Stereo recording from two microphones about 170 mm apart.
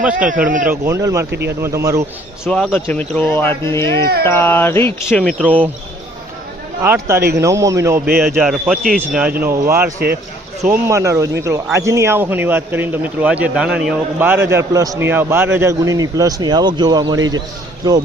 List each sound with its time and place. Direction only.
0.0 s a man's voice: 10° right (ahead or behind)
0.4 s speech: 50° right (ahead or behind)
0.7 s a man's voice: 15° right (ahead or behind)
1.3 s speech: 80° right
1.6 s a man's voice: 20° right (ahead or behind)
2.4 s speech: centre (ahead or behind)
5.4 s a man's voice: 10° right (ahead or behind)
6.8 s a man's voice: 15° right (ahead or behind)
8.2 s a man's voice: centre (ahead or behind); by 17.4 s 25° right (ahead or behind)